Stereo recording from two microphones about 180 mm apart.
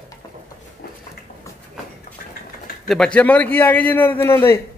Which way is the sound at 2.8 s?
5° left (ahead or behind).